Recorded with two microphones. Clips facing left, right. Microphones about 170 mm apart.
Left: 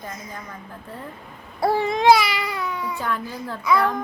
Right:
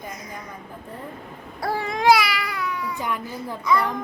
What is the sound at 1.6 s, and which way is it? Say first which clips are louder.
Babbling: left 4 dB; 25° left (ahead or behind).